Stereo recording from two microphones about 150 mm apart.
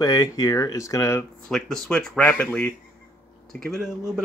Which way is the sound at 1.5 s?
5° left (ahead or behind).